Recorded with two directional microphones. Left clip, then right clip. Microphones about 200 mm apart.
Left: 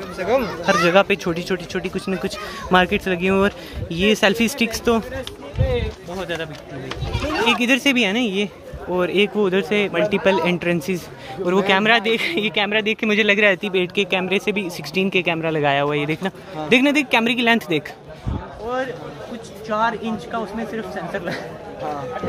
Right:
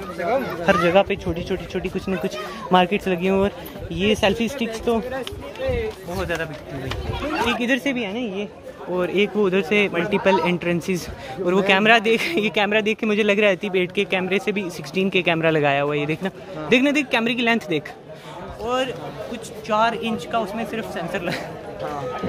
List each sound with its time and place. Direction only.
0.7 s speech: 10° left (ahead or behind)
6.1 s speech: centre (ahead or behind)
7.4 s speech: 15° left (ahead or behind)
7.9 s speech: 40° left (ahead or behind)
8.9 s speech: 10° left (ahead or behind)
19.7 s speech: 5° right (ahead or behind)